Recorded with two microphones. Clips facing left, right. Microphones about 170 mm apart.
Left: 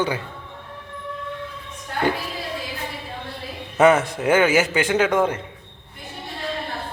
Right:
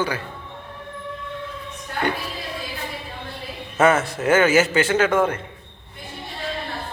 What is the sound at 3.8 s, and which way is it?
A man's voice, 15° left (ahead or behind).